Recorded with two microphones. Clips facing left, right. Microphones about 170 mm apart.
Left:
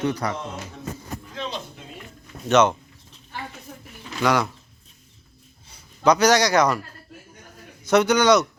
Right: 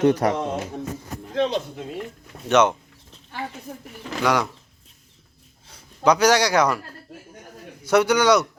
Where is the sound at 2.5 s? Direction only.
10° right (ahead or behind).